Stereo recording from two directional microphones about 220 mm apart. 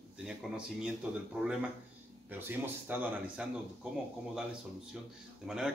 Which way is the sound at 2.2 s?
10° right (ahead or behind).